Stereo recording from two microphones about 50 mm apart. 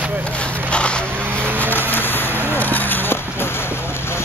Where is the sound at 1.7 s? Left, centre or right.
Left.